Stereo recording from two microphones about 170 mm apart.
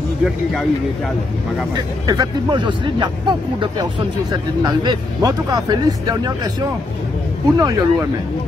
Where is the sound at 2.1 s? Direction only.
25° right (ahead or behind).